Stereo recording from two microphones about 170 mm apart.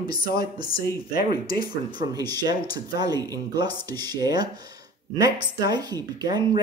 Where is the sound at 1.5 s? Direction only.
25° right (ahead or behind).